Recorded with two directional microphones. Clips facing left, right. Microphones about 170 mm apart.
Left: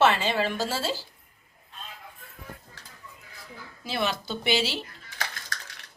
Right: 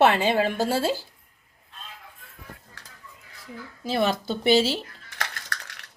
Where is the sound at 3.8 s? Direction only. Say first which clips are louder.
Right 5 dB; 45° right (ahead or behind).